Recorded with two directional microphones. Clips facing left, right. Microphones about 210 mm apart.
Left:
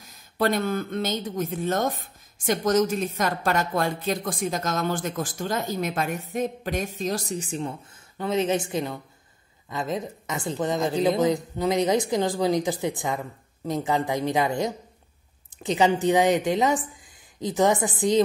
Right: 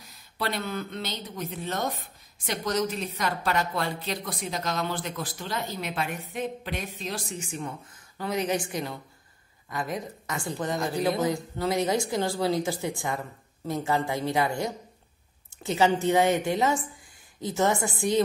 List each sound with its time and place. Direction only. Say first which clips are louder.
0.4 s a woman's voice: left 7 dB; 45° left (ahead or behind); by 18.2 s 20° left (ahead or behind)